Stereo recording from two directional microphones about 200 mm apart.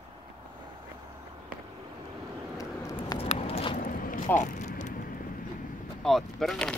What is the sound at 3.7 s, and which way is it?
Vehicle, 45° left (ahead or behind).